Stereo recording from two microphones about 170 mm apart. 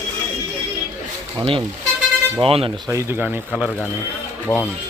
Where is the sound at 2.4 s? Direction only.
35° right (ahead or behind).